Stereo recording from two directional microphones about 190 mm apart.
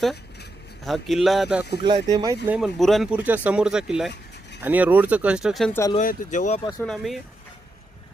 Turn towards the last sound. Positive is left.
turn(degrees=0)  # may be behind; listen again after turning